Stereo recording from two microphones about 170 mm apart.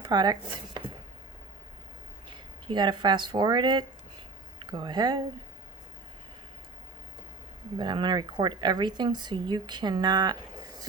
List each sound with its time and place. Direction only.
0.1 s speech: 25° right (ahead or behind)
2.6 s speech: 25° right (ahead or behind)
7.8 s speech: 25° right (ahead or behind)